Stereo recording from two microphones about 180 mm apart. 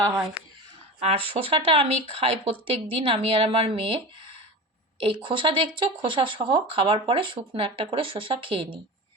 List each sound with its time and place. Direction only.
0.0 s speech: 20° right (ahead or behind)